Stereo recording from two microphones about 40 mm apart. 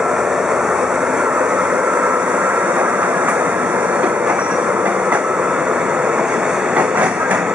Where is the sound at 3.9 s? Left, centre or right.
Right.